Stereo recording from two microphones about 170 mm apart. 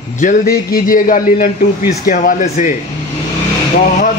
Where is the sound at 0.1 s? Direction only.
50° left (ahead or behind).